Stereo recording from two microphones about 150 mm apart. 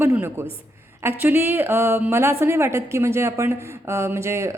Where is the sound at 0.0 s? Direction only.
15° right (ahead or behind).